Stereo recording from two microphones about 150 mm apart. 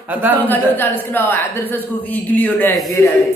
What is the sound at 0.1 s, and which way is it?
Speech, 10° right (ahead or behind).